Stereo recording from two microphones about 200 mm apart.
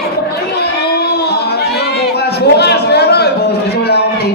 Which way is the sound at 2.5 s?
55° left (ahead or behind).